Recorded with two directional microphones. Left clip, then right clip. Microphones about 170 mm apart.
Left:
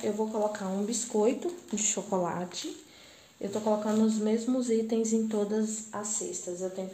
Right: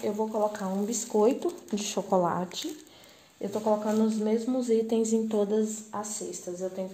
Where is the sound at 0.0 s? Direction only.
10° right (ahead or behind); by 2.6 s 35° right (ahead or behind).